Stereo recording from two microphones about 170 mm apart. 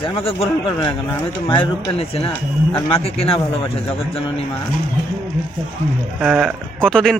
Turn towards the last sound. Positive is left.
turn(degrees=5)  # may be behind; listen again after turning